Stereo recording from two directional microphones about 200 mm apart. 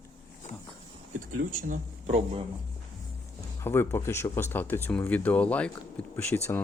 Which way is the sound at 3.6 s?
10° left (ahead or behind).